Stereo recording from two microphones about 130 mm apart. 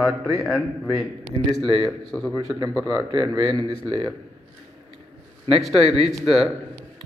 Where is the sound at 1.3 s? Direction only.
35° right (ahead or behind).